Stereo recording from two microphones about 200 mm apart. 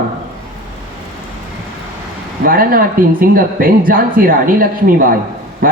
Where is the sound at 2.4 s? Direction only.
45° right (ahead or behind).